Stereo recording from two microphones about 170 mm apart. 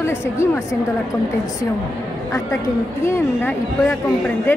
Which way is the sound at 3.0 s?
15° left (ahead or behind).